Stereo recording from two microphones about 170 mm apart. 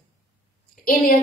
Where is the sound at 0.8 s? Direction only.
55° left (ahead or behind).